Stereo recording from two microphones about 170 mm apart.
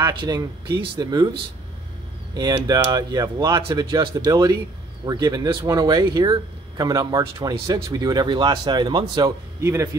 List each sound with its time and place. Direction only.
0.0 s speech: 25° right (ahead or behind)
2.3 s a man's voice: 25° right (ahead or behind)